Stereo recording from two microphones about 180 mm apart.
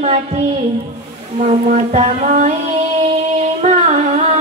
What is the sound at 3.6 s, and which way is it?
Music, 40° right (ahead or behind).